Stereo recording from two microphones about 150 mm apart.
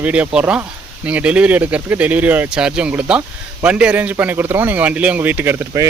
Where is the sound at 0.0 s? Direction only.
10° right (ahead or behind).